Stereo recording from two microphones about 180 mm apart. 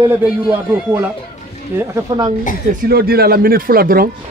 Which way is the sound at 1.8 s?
15° right (ahead or behind).